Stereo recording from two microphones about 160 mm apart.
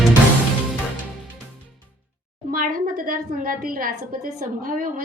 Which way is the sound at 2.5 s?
60° right (ahead or behind).